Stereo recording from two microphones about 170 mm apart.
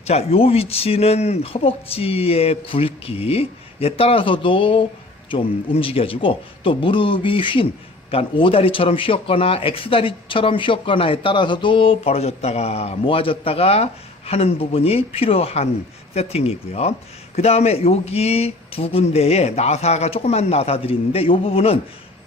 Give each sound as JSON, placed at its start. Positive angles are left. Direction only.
{"t": 0.1, "sound": "speech", "side_deg": 35}